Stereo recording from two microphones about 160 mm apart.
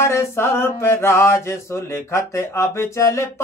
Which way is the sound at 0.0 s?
15° left (ahead or behind).